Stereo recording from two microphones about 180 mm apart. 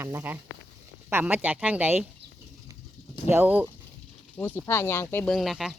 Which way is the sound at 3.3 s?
10° right (ahead or behind).